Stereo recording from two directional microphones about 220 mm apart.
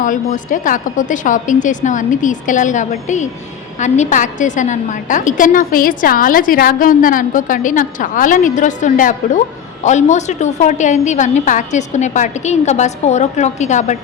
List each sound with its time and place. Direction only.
0.0 s a woman's voice: 35° left (ahead or behind)